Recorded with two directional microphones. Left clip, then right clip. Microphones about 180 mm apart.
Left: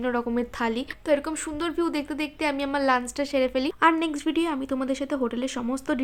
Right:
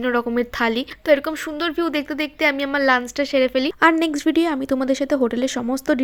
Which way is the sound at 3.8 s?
30° right (ahead or behind).